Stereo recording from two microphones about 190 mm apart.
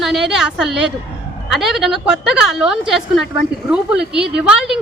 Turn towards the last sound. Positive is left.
turn(degrees=-5)  # may be behind; listen again after turning